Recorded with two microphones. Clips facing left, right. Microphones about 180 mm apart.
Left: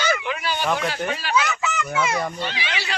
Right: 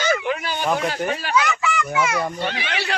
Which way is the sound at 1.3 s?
20° left (ahead or behind).